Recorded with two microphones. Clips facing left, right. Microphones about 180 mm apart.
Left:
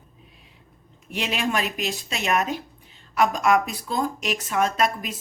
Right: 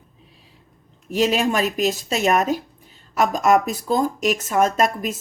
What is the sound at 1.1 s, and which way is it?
Speech, 40° right (ahead or behind).